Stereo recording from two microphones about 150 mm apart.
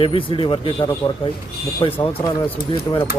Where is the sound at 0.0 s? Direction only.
40° left (ahead or behind).